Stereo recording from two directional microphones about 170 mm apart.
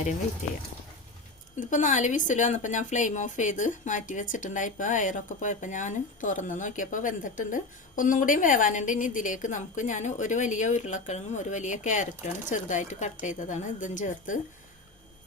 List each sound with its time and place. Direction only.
0.4 s a woman's voice: 45° left (ahead or behind)